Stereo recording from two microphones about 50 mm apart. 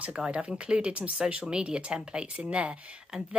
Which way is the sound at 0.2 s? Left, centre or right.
Right.